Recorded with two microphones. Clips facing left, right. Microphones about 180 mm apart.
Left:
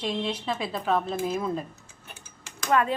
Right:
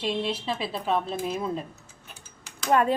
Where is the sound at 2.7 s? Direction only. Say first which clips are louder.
Right 2 dB; 40° right (ahead or behind).